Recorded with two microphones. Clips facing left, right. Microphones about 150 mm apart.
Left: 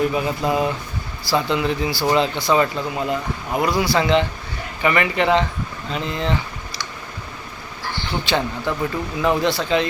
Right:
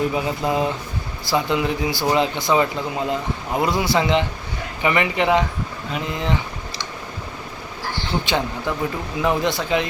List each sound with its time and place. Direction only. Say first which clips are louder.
0.1 s speech: left 1 dB; 20° right (ahead or behind)
8.2 s speech: left 4 dB; 15° right (ahead or behind)